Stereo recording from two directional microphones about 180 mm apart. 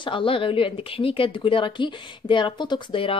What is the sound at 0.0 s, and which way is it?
A woman's voice, 30° left (ahead or behind).